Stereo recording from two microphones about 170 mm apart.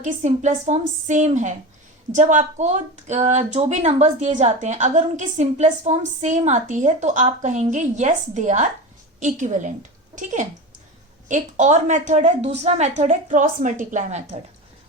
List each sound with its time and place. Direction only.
0.0 s speech: 45° right (ahead or behind)
11.3 s speech: 45° right (ahead or behind)